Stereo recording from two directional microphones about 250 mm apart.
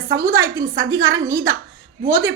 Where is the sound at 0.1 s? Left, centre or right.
Centre.